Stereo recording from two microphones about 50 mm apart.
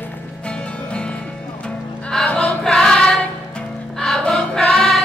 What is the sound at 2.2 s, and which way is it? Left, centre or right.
Choir, left.